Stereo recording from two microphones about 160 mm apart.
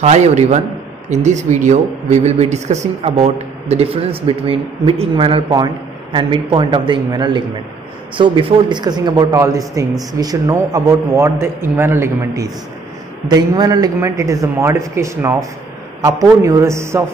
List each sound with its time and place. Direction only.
0.0 s a man's voice: 45° right (ahead or behind); by 17.0 s 15° right (ahead or behind)